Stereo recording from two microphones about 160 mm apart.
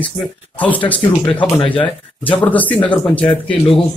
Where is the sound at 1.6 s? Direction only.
35° left (ahead or behind).